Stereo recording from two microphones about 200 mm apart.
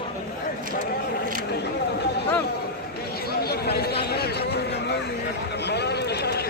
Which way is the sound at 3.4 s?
50° left (ahead or behind).